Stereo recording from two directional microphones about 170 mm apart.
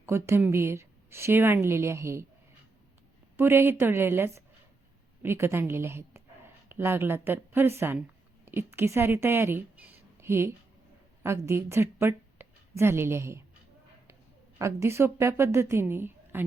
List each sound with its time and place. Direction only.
0.0 s a woman's voice: 15° right (ahead or behind)
3.3 s a woman's voice: 15° right (ahead or behind)
14.6 s a woman's voice: 15° right (ahead or behind)